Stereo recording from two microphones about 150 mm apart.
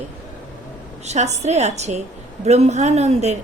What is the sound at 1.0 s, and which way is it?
A woman's voice, 50° right (ahead or behind).